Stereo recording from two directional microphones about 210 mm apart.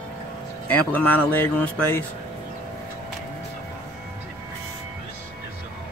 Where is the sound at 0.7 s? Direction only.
5° left (ahead or behind).